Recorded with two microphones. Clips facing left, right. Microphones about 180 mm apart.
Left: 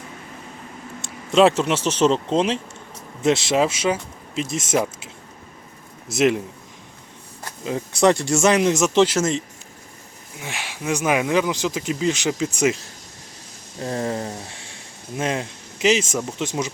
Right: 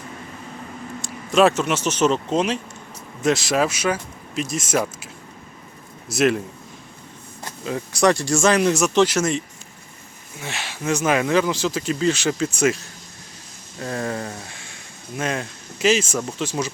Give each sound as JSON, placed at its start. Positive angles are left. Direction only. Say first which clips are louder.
{"t": 1.0, "sound": "speech", "louder": "left 1 dB", "side_deg": 25}
{"t": 6.1, "sound": "speech", "louder": "even", "side_deg": 20}
{"t": 7.6, "sound": "speech", "louder": "left 1 dB", "side_deg": 20}
{"t": 10.4, "sound": "speech", "louder": "right 1 dB", "side_deg": 10}
{"t": 13.7, "sound": "speech", "louder": "left 1 dB", "side_deg": 20}